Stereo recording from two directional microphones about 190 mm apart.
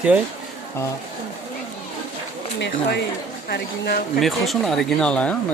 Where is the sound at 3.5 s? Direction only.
55° left (ahead or behind).